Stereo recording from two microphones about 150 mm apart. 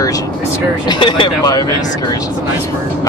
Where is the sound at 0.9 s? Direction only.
30° left (ahead or behind).